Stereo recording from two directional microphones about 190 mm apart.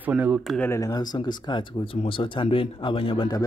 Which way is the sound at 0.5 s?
10° left (ahead or behind).